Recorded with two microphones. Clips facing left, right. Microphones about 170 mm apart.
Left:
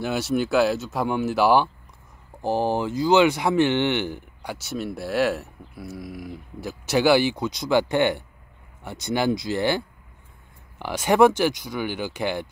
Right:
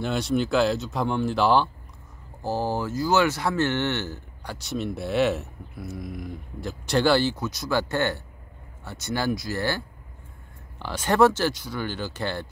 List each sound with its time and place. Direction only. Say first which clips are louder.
0.0 s speech: left 1 dB; 5° left (ahead or behind)